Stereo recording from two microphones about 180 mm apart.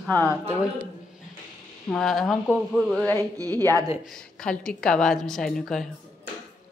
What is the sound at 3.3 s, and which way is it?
Speech, 20° right (ahead or behind).